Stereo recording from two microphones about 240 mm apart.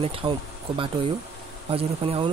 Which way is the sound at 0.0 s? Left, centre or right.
Right.